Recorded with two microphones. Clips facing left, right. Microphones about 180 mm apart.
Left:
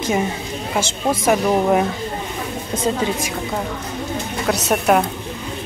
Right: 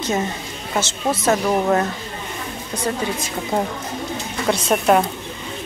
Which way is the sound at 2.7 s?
90° left.